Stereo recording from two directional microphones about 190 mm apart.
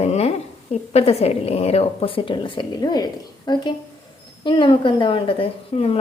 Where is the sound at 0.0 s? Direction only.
35° left (ahead or behind).